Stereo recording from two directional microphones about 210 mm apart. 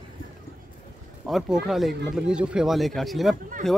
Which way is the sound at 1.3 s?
Centre (ahead or behind).